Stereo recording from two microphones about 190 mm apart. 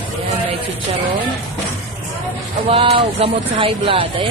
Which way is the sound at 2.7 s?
30° right (ahead or behind).